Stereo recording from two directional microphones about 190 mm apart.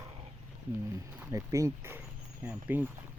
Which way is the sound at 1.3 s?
15° right (ahead or behind).